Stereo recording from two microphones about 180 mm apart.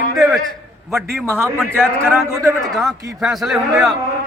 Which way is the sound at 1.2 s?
15° right (ahead or behind).